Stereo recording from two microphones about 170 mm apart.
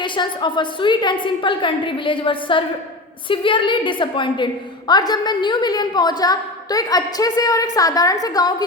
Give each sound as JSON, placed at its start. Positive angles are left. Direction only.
{"t": 0.0, "sound": "a woman's voice", "side_deg": 25}